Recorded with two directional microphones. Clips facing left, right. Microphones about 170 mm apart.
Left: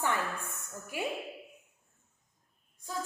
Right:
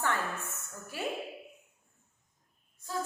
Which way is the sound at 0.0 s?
15° left (ahead or behind).